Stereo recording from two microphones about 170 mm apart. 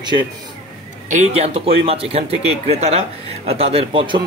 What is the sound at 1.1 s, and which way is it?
A man's voice, 40° right (ahead or behind).